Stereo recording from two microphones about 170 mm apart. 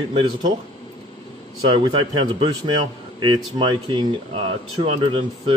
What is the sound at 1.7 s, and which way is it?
A man's voice, 30° right (ahead or behind).